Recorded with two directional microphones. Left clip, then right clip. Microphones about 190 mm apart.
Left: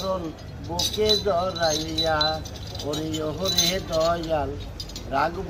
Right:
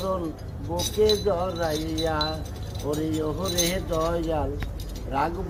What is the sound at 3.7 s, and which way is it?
Wind chime, 30° left (ahead or behind).